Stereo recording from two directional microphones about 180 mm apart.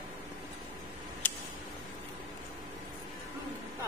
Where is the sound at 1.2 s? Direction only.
10° left (ahead or behind).